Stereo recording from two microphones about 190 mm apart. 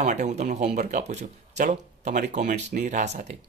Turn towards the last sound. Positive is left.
turn(degrees=-40)  # may be behind; listen again after turning